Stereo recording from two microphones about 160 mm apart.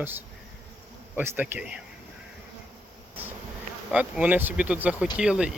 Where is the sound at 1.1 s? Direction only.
10° right (ahead or behind).